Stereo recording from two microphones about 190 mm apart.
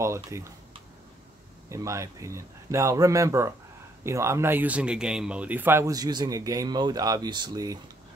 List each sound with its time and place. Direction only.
0.0 s speech: 15° right (ahead or behind)
1.7 s speech: 15° right (ahead or behind)